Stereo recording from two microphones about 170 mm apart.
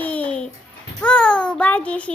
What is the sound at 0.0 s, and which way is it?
Music, 10° left (ahead or behind).